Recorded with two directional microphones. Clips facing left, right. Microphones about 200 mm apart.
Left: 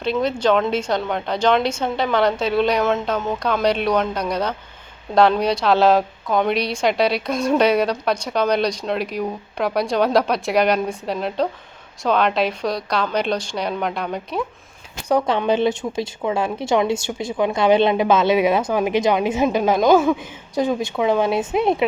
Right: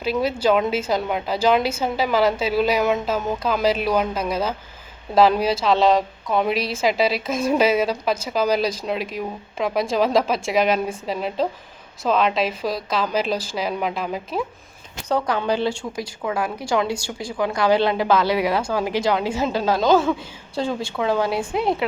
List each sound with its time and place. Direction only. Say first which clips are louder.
0.0 s a woman's voice: left 1 dB; 5° right (ahead or behind)
3.2 s a woman's voice: left 1 dB; 5° right (ahead or behind)
15.3 s a woman's voice: left 3 dB; 20° left (ahead or behind)